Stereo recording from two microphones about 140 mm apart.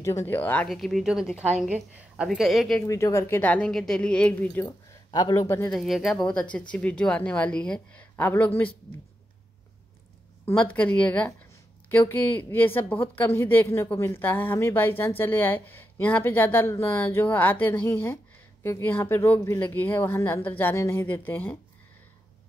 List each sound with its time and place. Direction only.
0.0 s a woman's voice: 20° left (ahead or behind)
0.7 s a woman's voice: centre (ahead or behind)
2.9 s a woman's voice: 20° left (ahead or behind)
5.1 s speech: 25° left (ahead or behind)
5.7 s a woman's voice: centre (ahead or behind); by 8.6 s 15° left (ahead or behind)
10.4 s a woman's voice: 10° left (ahead or behind)